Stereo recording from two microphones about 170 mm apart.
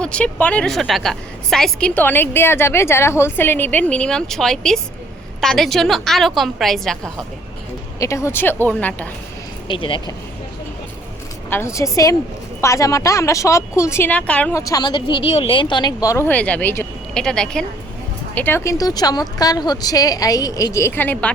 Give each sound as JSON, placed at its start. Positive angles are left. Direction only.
{"t": 0.0, "sound": "a woman's voice", "side_deg": 5}
{"t": 7.9, "sound": "a woman's voice", "side_deg": 20}
{"t": 9.6, "sound": "speech", "side_deg": 30}
{"t": 11.4, "sound": "a woman's voice", "side_deg": 15}
{"t": 14.7, "sound": "a woman's voice", "side_deg": 25}